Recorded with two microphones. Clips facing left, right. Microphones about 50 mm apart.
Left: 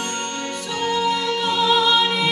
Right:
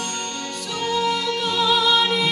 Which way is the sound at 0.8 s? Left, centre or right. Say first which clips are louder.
Left 1 dB; left.